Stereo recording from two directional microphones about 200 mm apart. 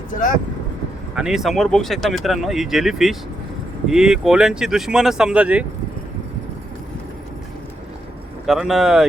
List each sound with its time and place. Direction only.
0.1 s speech: 40° left (ahead or behind)
1.1 s speech: 5° right (ahead or behind)
8.4 s speech: centre (ahead or behind)